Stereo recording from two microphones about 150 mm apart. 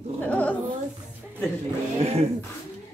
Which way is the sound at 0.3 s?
10° left (ahead or behind).